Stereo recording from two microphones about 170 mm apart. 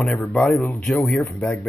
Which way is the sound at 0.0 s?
5° left (ahead or behind).